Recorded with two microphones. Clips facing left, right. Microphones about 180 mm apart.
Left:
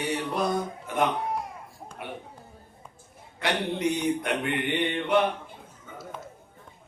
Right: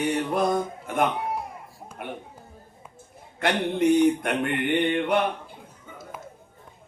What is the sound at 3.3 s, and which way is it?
Speech, 50° right (ahead or behind).